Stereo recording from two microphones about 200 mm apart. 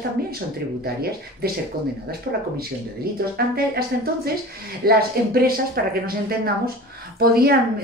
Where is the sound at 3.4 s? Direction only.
50° right (ahead or behind).